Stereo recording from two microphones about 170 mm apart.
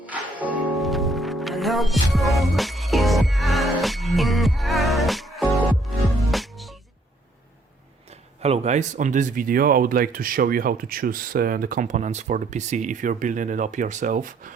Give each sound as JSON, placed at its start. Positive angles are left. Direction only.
{"t": 0.0, "sound": "music", "side_deg": -10}
{"t": 8.4, "sound": "speech", "side_deg": -40}